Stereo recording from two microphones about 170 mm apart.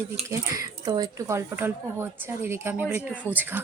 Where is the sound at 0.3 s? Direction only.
20° right (ahead or behind).